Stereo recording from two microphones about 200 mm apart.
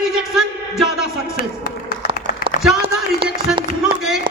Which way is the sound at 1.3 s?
45° left (ahead or behind).